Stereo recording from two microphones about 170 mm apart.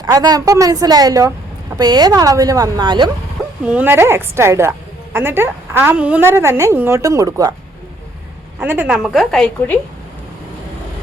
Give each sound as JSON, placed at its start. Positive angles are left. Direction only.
{"t": 0.0, "sound": "a woman's voice", "side_deg": -20}
{"t": 3.7, "sound": "a woman's voice", "side_deg": -10}
{"t": 8.6, "sound": "a woman's voice", "side_deg": -10}